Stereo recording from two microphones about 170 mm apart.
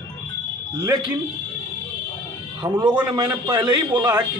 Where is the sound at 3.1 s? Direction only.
25° right (ahead or behind).